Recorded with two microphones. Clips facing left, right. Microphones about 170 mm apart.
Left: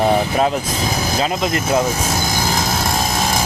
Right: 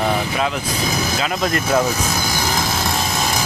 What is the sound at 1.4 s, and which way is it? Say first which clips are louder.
Speech: right 2 dB; 25° left (ahead or behind).